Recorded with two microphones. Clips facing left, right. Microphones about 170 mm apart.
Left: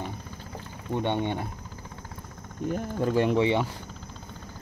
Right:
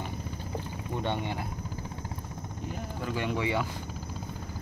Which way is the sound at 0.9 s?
20° left (ahead or behind).